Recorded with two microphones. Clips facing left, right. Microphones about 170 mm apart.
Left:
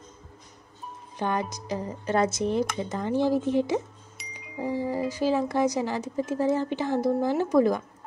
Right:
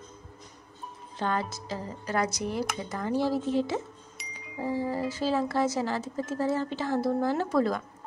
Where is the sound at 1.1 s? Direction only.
15° left (ahead or behind).